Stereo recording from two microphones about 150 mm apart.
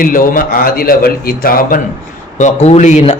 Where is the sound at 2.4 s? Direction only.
50° left (ahead or behind).